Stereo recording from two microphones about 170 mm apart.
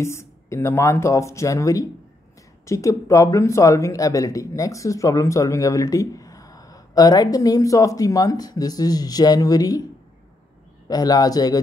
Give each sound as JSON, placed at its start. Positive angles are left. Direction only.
{"t": 0.0, "sound": "speech", "side_deg": 15}
{"t": 10.9, "sound": "speech", "side_deg": 20}